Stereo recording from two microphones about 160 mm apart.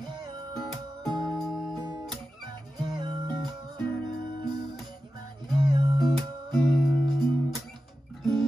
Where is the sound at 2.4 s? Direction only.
30° right (ahead or behind).